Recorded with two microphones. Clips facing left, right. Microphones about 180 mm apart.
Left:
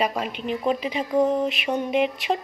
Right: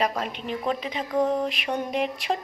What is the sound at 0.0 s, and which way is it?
Speech, 5° left (ahead or behind).